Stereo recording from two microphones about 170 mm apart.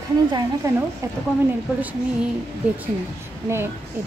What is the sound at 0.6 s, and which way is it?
Speech, 20° right (ahead or behind).